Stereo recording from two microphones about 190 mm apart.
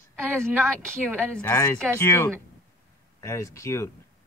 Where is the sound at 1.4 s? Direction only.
15° left (ahead or behind).